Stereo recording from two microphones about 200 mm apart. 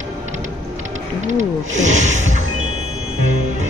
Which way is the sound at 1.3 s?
35° right (ahead or behind).